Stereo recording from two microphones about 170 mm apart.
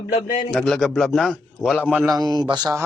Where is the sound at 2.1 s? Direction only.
25° right (ahead or behind).